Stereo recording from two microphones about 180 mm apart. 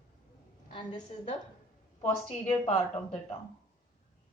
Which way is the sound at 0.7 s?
25° left (ahead or behind).